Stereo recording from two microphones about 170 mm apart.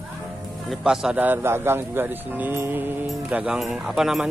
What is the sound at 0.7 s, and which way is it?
Speech, 5° right (ahead or behind).